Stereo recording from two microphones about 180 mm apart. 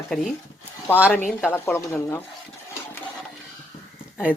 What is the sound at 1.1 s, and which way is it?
Speech, 10° left (ahead or behind).